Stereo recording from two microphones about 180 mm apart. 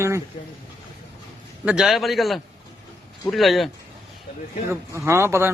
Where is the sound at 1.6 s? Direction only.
5° right (ahead or behind).